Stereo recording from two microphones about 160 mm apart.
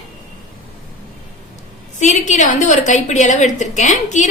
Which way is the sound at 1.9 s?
50° left (ahead or behind).